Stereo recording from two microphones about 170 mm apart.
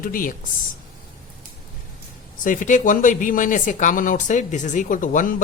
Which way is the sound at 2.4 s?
50° left (ahead or behind).